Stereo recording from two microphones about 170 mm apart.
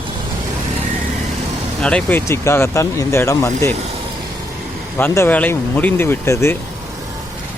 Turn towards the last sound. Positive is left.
turn(degrees=15)  # may be behind; listen again after turning